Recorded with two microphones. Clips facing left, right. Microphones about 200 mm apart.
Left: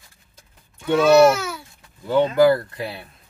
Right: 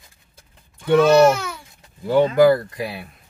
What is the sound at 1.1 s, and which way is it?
Speech, 10° left (ahead or behind).